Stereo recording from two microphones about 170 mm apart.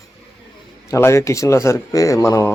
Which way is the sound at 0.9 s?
15° left (ahead or behind).